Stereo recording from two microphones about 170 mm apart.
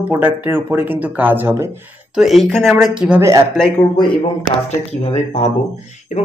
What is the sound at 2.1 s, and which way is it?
Speech, centre (ahead or behind).